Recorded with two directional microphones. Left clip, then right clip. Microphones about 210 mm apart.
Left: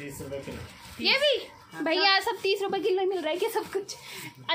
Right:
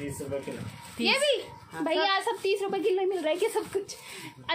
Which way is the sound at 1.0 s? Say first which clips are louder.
Left 1 dB; 5° left (ahead or behind).